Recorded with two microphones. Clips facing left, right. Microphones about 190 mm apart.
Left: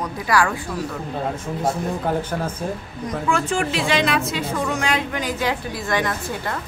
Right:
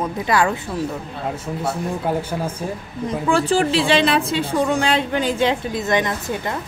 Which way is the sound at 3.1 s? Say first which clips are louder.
Right 4 dB; 30° right (ahead or behind).